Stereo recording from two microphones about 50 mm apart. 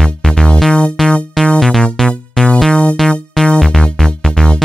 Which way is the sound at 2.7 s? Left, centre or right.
Left.